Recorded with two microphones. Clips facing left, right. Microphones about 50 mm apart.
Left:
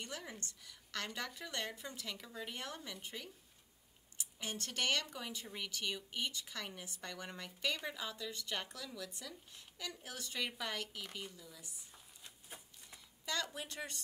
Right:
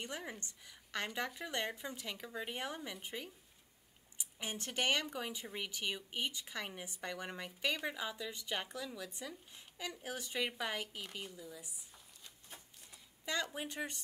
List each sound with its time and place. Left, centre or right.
0.0 s speech: centre
13.2 s speech: centre